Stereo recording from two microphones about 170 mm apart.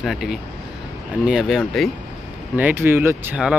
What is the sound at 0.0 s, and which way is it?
Speech, centre (ahead or behind).